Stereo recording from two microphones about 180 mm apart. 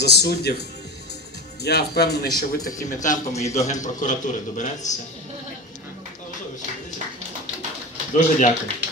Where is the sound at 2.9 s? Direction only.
45° left (ahead or behind).